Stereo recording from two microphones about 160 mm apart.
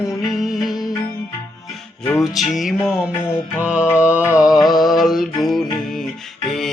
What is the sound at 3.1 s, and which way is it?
Music, 15° left (ahead or behind).